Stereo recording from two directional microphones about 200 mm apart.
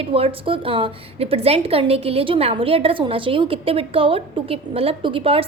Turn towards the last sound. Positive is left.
turn(degrees=-30)  # may be behind; listen again after turning